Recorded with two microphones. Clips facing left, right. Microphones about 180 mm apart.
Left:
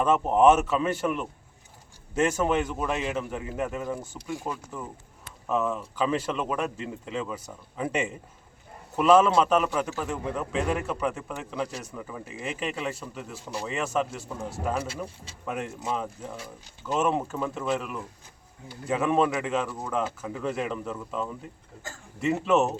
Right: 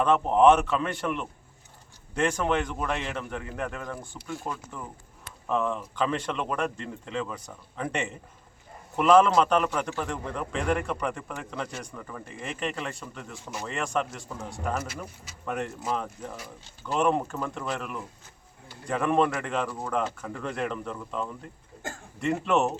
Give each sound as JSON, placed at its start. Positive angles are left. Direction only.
{"t": 0.0, "sound": "a man's voice", "side_deg": 5}
{"t": 15.0, "sound": "speech", "side_deg": 30}
{"t": 15.4, "sound": "speech", "side_deg": 5}